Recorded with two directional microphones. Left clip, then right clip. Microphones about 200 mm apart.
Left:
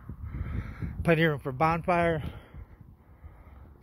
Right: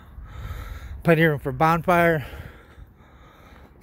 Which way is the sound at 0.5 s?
10° right (ahead or behind).